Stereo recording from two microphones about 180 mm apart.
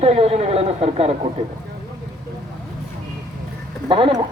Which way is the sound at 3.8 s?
30° right (ahead or behind).